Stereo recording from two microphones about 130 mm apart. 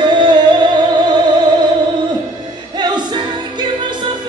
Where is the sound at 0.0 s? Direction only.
35° right (ahead or behind).